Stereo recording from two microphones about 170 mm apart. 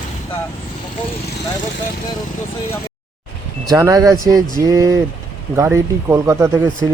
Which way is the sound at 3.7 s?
20° right (ahead or behind).